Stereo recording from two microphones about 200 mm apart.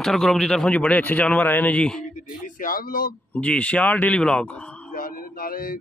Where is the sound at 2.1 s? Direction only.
45° left (ahead or behind).